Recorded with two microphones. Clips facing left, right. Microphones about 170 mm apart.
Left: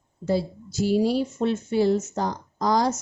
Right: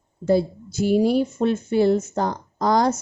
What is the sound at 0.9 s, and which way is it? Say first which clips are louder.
Speech: right 4 dB; 55° right (ahead or behind).